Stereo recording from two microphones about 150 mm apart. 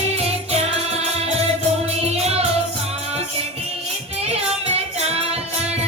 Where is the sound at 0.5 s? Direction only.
45° right (ahead or behind).